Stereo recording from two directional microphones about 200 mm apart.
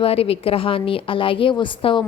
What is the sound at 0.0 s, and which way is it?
A woman's voice, 30° left (ahead or behind).